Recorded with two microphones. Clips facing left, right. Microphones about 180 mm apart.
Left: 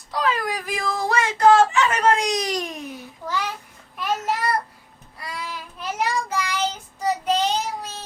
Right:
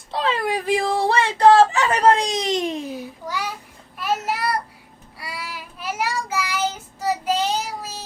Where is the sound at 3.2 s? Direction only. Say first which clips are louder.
Left 4 dB; 10° right (ahead or behind).